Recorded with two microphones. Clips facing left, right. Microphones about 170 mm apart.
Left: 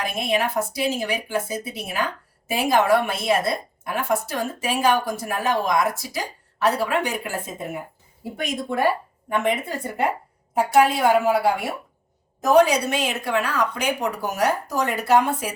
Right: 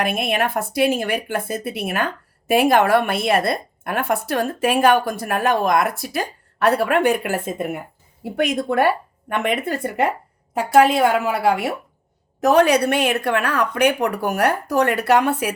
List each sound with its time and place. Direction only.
0.0 s a woman's voice: 60° right (ahead or behind)